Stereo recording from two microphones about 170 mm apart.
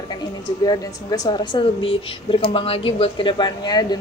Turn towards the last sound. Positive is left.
turn(degrees=25)  # may be behind; listen again after turning